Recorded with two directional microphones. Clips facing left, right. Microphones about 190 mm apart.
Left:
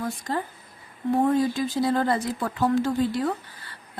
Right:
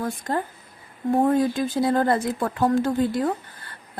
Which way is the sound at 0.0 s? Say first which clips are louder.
Right 2 dB; 50° right (ahead or behind).